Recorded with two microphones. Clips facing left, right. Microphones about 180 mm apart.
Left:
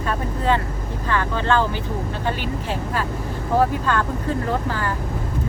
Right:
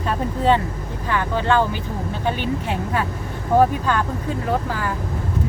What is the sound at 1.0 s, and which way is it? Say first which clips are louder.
Speech: right 1 dB; 15° right (ahead or behind).